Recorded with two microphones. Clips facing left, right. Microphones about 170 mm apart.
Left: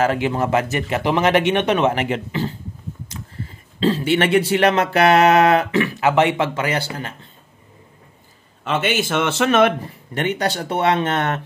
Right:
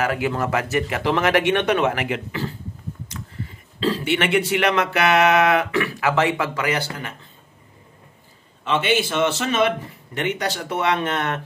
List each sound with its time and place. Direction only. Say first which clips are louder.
0.0 s speech: left 3 dB; 25° left (ahead or behind)
8.6 s a man's voice: even; 50° left (ahead or behind)
10.1 s speech: left 3 dB; 35° left (ahead or behind)